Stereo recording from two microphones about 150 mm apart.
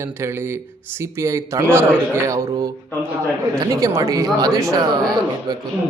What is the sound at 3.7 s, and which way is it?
A man's voice, 20° right (ahead or behind).